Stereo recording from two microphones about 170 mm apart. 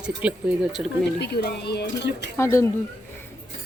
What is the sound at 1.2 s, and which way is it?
Speech, 75° left (ahead or behind).